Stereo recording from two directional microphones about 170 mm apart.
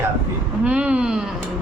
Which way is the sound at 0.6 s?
5° right (ahead or behind).